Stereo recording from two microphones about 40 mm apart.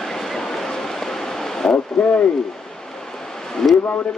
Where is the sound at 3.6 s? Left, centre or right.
Centre.